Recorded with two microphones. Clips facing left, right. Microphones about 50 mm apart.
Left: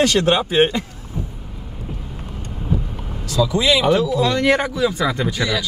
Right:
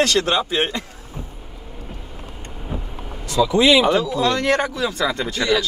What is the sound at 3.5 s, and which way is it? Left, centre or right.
Speech, right.